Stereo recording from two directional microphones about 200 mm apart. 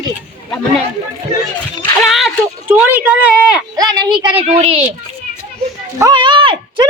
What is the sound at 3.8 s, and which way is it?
Speech, 20° right (ahead or behind).